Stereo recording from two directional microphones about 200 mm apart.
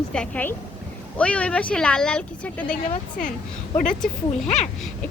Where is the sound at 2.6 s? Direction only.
40° left (ahead or behind).